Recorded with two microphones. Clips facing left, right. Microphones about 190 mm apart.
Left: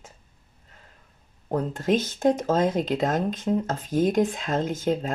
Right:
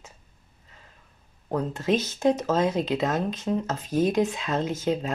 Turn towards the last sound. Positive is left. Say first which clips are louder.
# left 1 dB
turn(degrees=50)  # may be behind; listen again after turning